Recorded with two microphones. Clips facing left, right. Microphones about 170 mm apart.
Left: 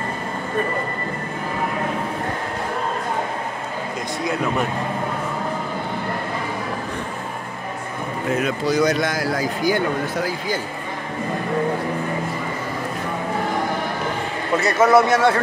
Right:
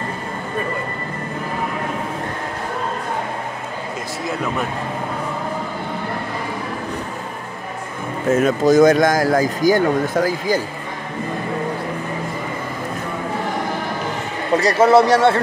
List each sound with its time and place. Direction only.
4.2 s speech: centre (ahead or behind)
8.3 s speech: 45° right (ahead or behind)
14.6 s speech: 30° right (ahead or behind)